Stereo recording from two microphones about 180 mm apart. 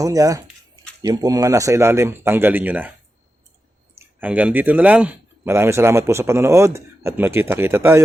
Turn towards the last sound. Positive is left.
turn(degrees=-15)  # may be behind; listen again after turning